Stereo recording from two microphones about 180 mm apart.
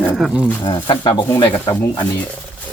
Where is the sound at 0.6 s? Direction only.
25° left (ahead or behind).